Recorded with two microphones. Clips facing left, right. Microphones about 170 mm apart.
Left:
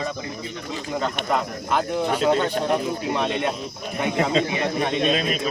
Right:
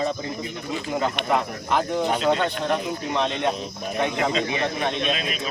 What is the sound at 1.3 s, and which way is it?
Speech, centre (ahead or behind).